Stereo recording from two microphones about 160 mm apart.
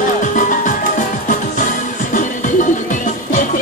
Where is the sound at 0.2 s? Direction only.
55° left (ahead or behind).